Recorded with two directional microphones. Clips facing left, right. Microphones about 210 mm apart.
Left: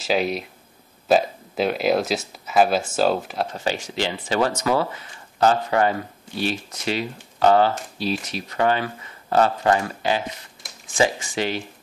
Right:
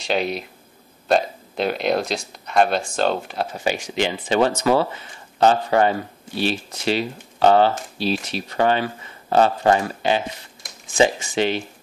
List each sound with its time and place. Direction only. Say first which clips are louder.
0.0 s speech: left 1 dB; centre (ahead or behind)
3.5 s speech: right 2 dB; 15° right (ahead or behind)